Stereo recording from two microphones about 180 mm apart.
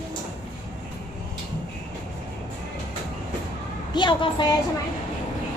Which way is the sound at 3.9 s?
25° left (ahead or behind).